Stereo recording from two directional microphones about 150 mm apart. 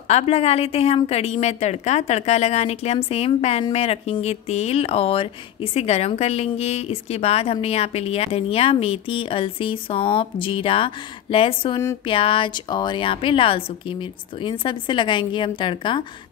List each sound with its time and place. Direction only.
0.1 s a woman's voice: 45° left (ahead or behind)